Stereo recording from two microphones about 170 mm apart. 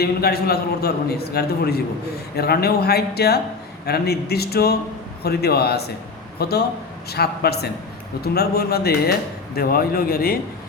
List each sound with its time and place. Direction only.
0.0 s a man's voice: 70° left (ahead or behind)